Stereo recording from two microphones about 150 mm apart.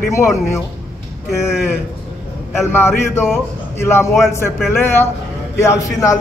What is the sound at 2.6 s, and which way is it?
A man's voice, 15° left (ahead or behind).